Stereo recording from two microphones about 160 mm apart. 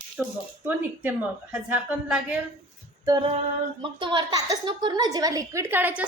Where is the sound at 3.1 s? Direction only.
30° right (ahead or behind).